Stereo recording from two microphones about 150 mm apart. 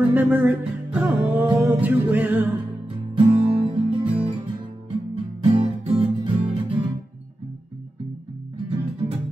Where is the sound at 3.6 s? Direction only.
35° right (ahead or behind).